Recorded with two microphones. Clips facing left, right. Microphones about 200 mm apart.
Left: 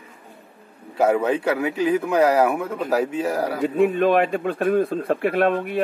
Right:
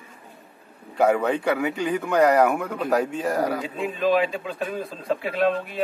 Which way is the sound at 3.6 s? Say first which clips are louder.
Left 7 dB; 60° left (ahead or behind).